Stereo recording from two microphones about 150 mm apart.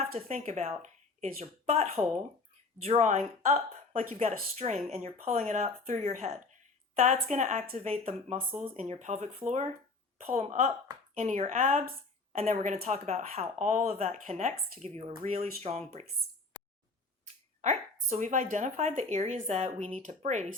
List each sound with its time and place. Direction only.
0.1 s a woman's voice: 55° right (ahead or behind)
17.6 s a woman's voice: 55° right (ahead or behind)